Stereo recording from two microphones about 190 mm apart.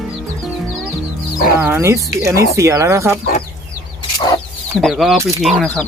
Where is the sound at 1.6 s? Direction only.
15° right (ahead or behind).